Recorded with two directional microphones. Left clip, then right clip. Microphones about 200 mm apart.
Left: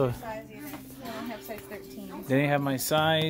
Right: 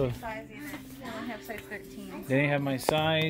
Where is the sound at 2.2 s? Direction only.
10° left (ahead or behind).